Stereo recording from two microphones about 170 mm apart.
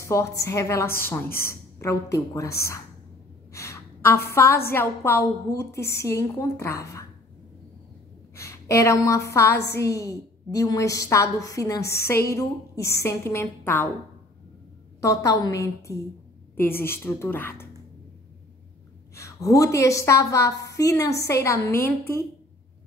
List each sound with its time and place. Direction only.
0.0 s a woman's voice: 15° left (ahead or behind)
3.5 s a sound: 15° left (ahead or behind)
4.6 s a woman's voice: 15° left (ahead or behind)
8.4 s a woman's voice: 15° left (ahead or behind)
15.0 s a woman's voice: 20° left (ahead or behind)
19.1 s a woman's voice: 20° left (ahead or behind)